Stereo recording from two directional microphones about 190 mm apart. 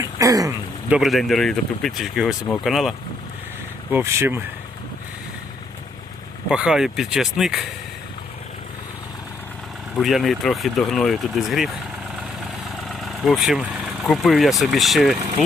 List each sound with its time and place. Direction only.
0.0 s speech: 15° right (ahead or behind)
0.9 s speech: 5° right (ahead or behind)
3.9 s speech: 15° right (ahead or behind)
6.5 s speech: 5° right (ahead or behind)
9.9 s speech: centre (ahead or behind)
12.9 s speech: centre (ahead or behind)